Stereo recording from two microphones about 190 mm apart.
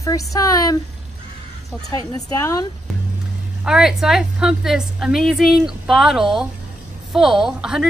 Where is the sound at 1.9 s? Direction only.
20° left (ahead or behind).